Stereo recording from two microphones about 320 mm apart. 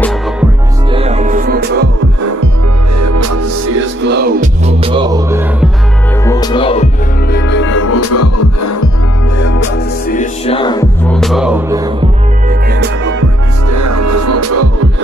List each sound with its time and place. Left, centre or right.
0.9 s music: centre
3.0 s music: right; by 5.7 s centre
6.2 s music: centre
7.3 s music: left
9.6 s music: left; by 11.9 s centre
12.4 s music: right
13.7 s music: right